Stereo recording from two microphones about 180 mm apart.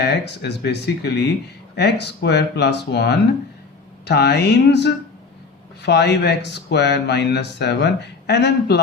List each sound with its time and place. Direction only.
0.0 s speech: 70° left (ahead or behind)